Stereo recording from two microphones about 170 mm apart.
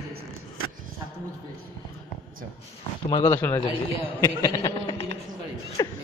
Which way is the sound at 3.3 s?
10° left (ahead or behind).